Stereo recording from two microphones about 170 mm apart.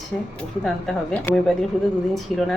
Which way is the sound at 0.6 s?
Centre (ahead or behind).